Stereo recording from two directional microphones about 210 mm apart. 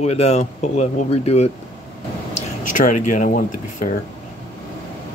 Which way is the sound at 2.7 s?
40° left (ahead or behind).